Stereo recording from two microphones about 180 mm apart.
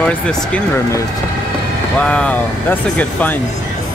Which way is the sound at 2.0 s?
5° left (ahead or behind).